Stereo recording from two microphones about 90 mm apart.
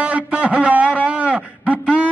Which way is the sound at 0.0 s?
15° right (ahead or behind).